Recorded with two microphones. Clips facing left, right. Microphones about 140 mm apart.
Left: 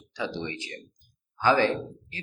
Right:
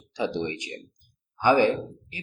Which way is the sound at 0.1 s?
20° right (ahead or behind).